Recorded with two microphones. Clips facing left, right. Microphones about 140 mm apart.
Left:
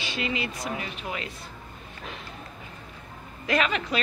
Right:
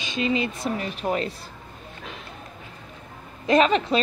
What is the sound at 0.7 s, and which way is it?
Speech, 40° right (ahead or behind).